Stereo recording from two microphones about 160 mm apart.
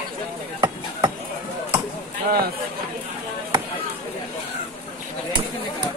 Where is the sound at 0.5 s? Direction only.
30° right (ahead or behind).